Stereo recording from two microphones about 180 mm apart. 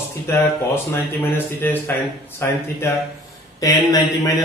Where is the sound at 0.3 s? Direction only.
15° left (ahead or behind).